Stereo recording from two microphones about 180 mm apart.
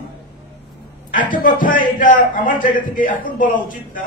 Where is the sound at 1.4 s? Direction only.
50° left (ahead or behind).